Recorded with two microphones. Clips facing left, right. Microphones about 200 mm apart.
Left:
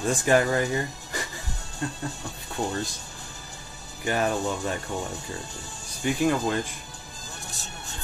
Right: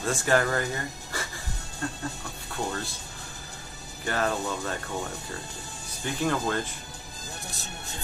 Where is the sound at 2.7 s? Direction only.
15° left (ahead or behind).